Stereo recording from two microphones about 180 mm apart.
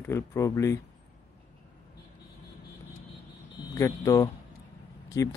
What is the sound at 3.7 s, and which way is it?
Speech, 15° left (ahead or behind).